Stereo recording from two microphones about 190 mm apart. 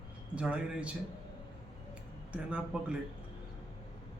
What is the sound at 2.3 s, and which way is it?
Speech, 5° right (ahead or behind).